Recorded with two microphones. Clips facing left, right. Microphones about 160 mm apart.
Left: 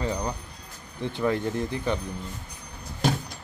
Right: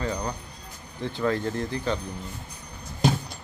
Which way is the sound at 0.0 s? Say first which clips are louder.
Left 1 dB; 15° left (ahead or behind).